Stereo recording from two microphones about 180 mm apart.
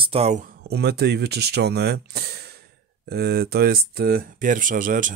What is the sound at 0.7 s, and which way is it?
Speech, 65° right (ahead or behind).